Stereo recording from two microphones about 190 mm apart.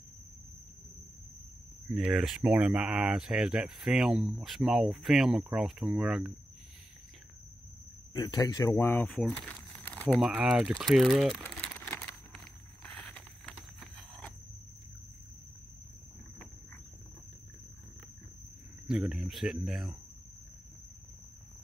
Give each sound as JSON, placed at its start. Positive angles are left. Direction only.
{"t": 2.0, "sound": "speech", "side_deg": -5}
{"t": 8.1, "sound": "speech", "side_deg": 20}
{"t": 9.8, "sound": "crumpling", "side_deg": 5}
{"t": 10.2, "sound": "speech", "side_deg": -5}
{"t": 11.8, "sound": "crumpling", "side_deg": 10}
{"t": 12.8, "sound": "a sound", "side_deg": 5}
{"t": 18.9, "sound": "speech", "side_deg": 0}